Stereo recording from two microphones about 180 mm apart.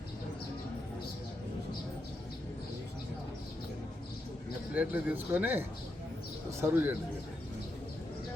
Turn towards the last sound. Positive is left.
turn(degrees=-10)  # may be behind; listen again after turning